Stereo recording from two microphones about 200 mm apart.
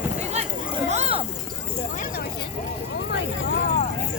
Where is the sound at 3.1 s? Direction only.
65° left (ahead or behind).